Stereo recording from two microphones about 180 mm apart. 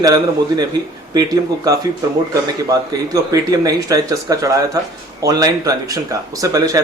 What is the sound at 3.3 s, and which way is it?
Speech, 20° right (ahead or behind).